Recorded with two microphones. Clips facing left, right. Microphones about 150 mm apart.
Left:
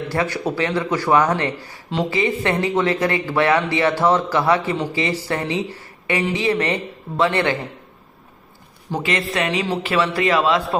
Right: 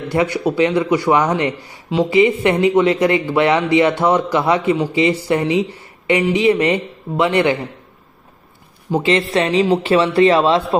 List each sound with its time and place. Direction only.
0.1 s speech: 20° right (ahead or behind)
8.9 s speech: 15° right (ahead or behind)
9.3 s speech: 25° right (ahead or behind)